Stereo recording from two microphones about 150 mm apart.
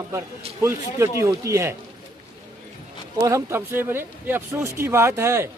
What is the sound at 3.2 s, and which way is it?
Speech, 20° right (ahead or behind).